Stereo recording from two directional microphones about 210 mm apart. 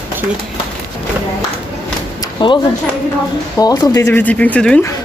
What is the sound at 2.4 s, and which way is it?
Speech, 20° left (ahead or behind).